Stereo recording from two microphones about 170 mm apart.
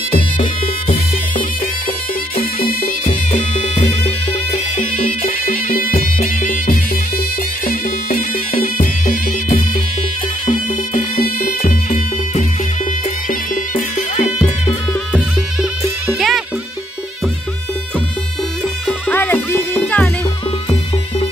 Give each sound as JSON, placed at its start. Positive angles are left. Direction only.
{"t": 2.6, "sound": "music", "side_deg": 55}
{"t": 4.7, "sound": "bagpipes", "side_deg": 50}
{"t": 7.6, "sound": "music", "side_deg": 55}
{"t": 16.2, "sound": "music", "side_deg": 0}
{"t": 18.9, "sound": "music", "side_deg": 10}